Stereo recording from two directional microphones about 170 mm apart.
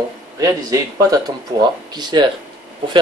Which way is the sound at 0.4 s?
20° right (ahead or behind).